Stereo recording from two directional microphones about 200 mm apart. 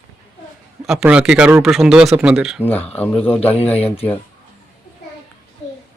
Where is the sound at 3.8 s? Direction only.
30° left (ahead or behind).